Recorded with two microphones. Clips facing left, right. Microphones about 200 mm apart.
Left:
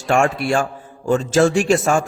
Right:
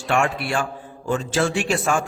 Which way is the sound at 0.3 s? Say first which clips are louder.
Left 5 dB; 45° left (ahead or behind).